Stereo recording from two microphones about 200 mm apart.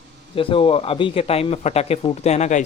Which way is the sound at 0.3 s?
25° left (ahead or behind).